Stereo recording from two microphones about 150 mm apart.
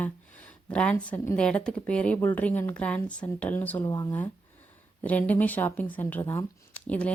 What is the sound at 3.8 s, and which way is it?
Speech, 25° left (ahead or behind).